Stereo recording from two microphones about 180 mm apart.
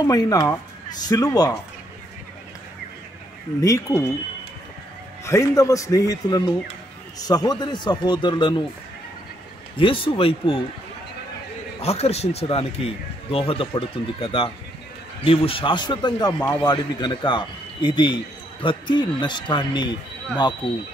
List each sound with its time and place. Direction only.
0.0 s a man's voice: 20° left (ahead or behind)
3.6 s a man's voice: 15° left (ahead or behind)
5.2 s a man's voice: 15° left (ahead or behind)
9.8 s a man's voice: 30° left (ahead or behind)
11.8 s a man's voice: 35° left (ahead or behind)